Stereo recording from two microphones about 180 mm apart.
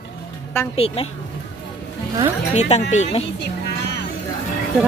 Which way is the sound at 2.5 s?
40° left (ahead or behind).